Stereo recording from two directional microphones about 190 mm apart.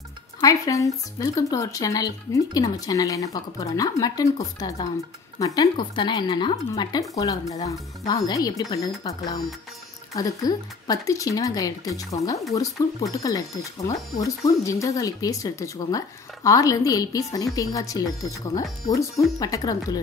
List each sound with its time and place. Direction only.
0.4 s speech: 15° left (ahead or behind)